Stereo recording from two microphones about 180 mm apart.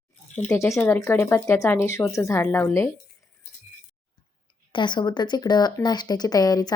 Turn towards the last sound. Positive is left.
turn(degrees=20)  # may be behind; listen again after turning